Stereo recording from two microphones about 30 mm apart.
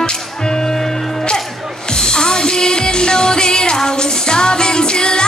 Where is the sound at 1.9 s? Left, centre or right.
Left.